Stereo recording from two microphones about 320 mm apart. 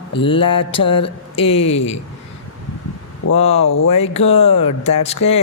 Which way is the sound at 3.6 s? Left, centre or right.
Left.